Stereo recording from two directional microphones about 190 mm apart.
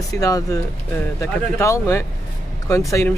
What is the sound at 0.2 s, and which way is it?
Speech, 15° left (ahead or behind).